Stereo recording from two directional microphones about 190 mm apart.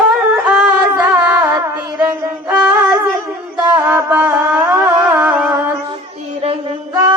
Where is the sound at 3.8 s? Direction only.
10° right (ahead or behind).